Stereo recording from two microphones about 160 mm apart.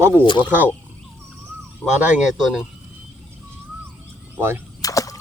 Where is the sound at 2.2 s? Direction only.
5° right (ahead or behind).